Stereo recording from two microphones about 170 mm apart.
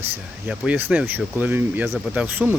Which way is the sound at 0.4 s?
5° right (ahead or behind).